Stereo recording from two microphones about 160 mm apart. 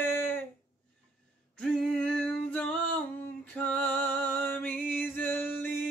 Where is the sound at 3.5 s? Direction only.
10° left (ahead or behind).